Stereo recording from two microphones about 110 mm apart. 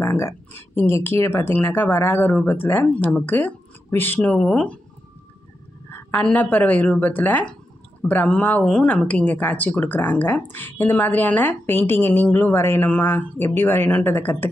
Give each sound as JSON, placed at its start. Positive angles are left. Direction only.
{"t": 0.0, "sound": "speech", "side_deg": 20}
{"t": 5.9, "sound": "a sound", "side_deg": 20}
{"t": 6.2, "sound": "speech", "side_deg": 15}